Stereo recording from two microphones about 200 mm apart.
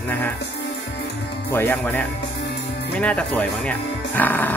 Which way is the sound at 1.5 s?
10° left (ahead or behind).